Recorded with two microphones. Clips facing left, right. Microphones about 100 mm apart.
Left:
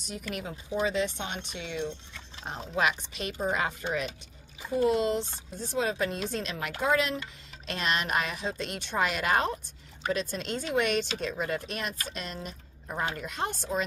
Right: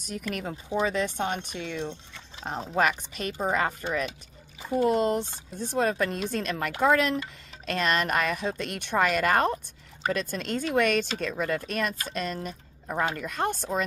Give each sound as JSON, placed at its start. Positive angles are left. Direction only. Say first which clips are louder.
{"t": 0.0, "sound": "speech", "louder": "right 3 dB", "side_deg": -50}